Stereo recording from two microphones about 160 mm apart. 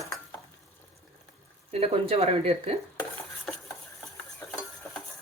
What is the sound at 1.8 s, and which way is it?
Speech, 40° right (ahead or behind).